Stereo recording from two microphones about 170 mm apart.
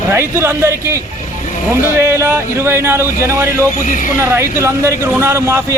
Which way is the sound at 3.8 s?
50° left (ahead or behind).